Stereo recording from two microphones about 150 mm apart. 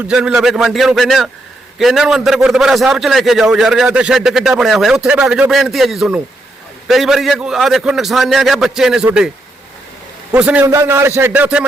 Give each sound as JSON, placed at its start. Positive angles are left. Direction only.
{"t": 0.0, "sound": "a man's voice", "side_deg": -5}
{"t": 10.3, "sound": "a man's voice", "side_deg": -10}